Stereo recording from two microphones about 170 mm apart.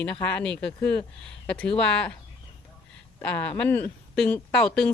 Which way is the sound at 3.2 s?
10° left (ahead or behind).